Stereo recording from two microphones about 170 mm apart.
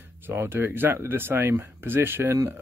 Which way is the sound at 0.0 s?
15° right (ahead or behind).